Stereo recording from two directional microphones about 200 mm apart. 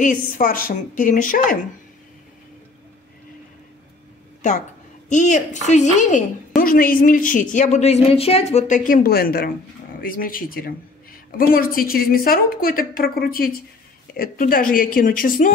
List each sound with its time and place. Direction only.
0.0 s a woman's voice: 40° left (ahead or behind)
5.1 s a woman's voice: 40° left (ahead or behind)